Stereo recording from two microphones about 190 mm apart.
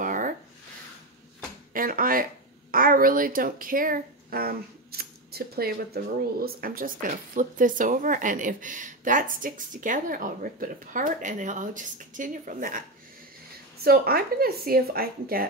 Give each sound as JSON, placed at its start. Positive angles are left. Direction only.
{"t": 0.0, "sound": "a sound", "side_deg": -45}
{"t": 1.7, "sound": "speech", "side_deg": -45}
{"t": 13.8, "sound": "speech", "side_deg": -55}